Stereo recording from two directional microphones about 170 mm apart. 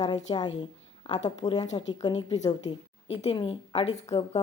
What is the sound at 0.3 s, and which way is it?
A woman's voice, 25° left (ahead or behind).